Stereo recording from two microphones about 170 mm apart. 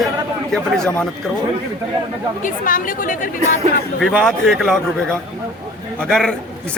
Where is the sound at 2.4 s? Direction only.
50° left (ahead or behind).